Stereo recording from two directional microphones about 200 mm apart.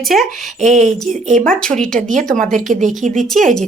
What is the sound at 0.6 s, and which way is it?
Speech, 35° right (ahead or behind).